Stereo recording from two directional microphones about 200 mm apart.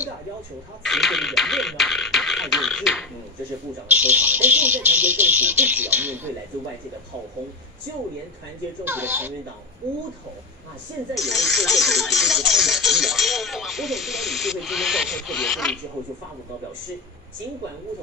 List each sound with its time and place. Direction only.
0.8 s speech: centre (ahead or behind)
8.8 s speech: 10° right (ahead or behind)
11.2 s speech: centre (ahead or behind)